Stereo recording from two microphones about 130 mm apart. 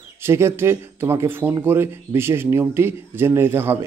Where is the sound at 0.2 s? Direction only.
20° right (ahead or behind).